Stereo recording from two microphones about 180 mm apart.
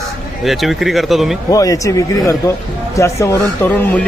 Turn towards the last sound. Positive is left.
turn(degrees=10)  # may be behind; listen again after turning